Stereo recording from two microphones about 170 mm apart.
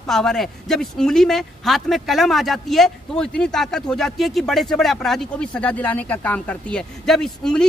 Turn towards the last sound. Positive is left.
turn(degrees=5)  # may be behind; listen again after turning